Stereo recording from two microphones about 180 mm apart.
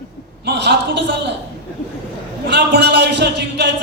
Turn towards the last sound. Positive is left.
turn(degrees=-70)  # may be behind; listen again after turning